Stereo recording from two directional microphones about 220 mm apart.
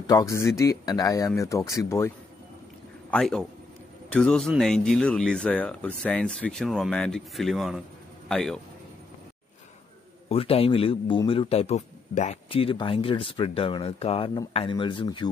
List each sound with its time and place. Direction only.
0.0 s a man's voice: 15° left (ahead or behind)
10.3 s speech: 25° left (ahead or behind)